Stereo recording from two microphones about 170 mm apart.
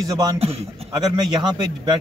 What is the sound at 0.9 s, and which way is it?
A man's voice, 25° right (ahead or behind).